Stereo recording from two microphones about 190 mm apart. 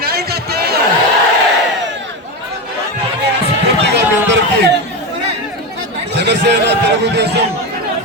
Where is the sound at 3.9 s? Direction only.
65° right (ahead or behind).